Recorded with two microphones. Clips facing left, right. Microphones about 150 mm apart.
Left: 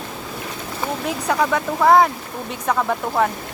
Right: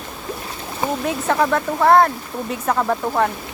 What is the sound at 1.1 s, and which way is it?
Speech, centre (ahead or behind).